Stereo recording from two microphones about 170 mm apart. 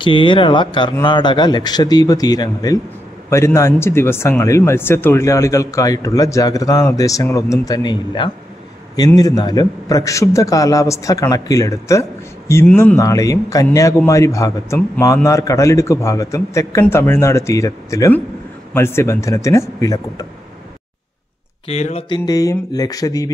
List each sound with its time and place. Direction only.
0.0 s a man's voice: 30° left (ahead or behind)
21.6 s speech: 40° left (ahead or behind)
22.1 s a man's voice: 20° left (ahead or behind)